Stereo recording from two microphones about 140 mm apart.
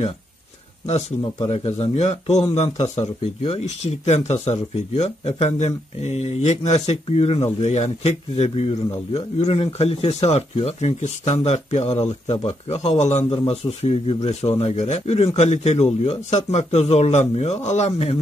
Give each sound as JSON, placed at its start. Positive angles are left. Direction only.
{"t": 1.5, "sound": "a man's voice", "side_deg": 50}